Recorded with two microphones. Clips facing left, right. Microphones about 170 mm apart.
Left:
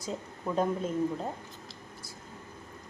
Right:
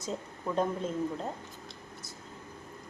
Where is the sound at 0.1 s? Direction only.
5° left (ahead or behind).